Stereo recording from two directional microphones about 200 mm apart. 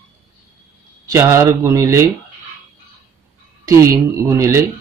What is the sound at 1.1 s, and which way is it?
Speech, 15° right (ahead or behind).